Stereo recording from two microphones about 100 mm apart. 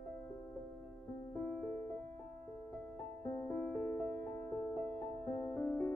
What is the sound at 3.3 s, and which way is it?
Music, 30° left (ahead or behind).